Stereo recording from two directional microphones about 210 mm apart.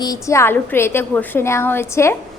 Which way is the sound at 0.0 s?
15° left (ahead or behind).